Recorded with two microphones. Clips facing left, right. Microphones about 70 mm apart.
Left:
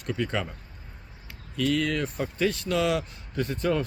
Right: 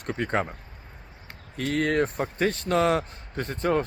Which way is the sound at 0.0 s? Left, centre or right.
Right.